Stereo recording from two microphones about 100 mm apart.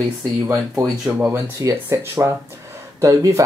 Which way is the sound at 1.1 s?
15° right (ahead or behind).